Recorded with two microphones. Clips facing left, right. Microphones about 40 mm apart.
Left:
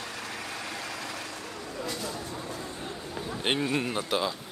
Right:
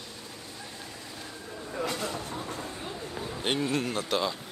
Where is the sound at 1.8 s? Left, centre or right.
Right.